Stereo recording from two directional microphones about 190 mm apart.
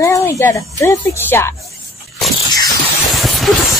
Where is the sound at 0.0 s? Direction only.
15° left (ahead or behind).